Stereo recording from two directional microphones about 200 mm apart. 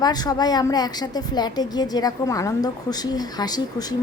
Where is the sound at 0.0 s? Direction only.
20° left (ahead or behind).